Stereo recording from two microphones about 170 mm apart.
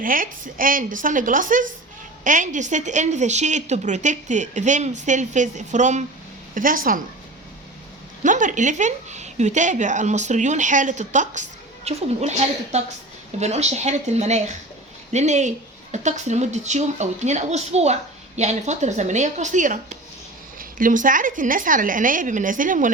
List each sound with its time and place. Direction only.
0.0 s a woman's voice: 55° right (ahead or behind)
8.2 s a woman's voice: 50° right (ahead or behind)